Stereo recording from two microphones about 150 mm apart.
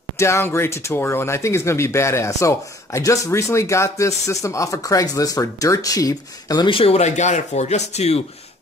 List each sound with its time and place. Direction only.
0.2 s speech: 20° left (ahead or behind); by 8.2 s 45° left (ahead or behind)